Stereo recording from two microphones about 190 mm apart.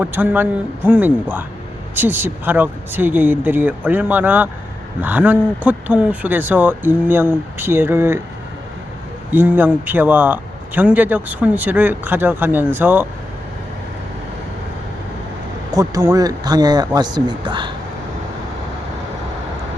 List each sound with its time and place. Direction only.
0.0 s a man's voice: 10° right (ahead or behind)
9.3 s a man's voice: 10° right (ahead or behind)
15.7 s speech: 20° right (ahead or behind)